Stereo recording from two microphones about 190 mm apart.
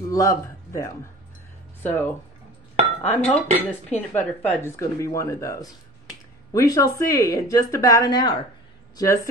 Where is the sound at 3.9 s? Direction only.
10° left (ahead or behind).